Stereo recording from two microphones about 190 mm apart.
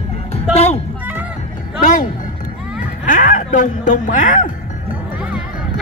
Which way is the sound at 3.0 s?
45° left (ahead or behind).